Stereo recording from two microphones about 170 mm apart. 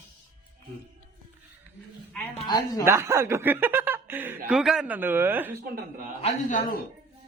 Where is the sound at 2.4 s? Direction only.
20° left (ahead or behind).